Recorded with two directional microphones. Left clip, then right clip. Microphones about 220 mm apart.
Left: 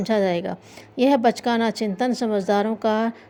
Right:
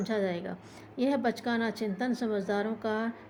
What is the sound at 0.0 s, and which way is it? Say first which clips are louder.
A woman's voice: left 10 dB; 35° left (ahead or behind).